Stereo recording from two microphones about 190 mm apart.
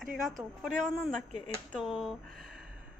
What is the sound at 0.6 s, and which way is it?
Speech, centre (ahead or behind).